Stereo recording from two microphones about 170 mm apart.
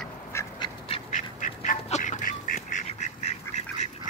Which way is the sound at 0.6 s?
35° left (ahead or behind).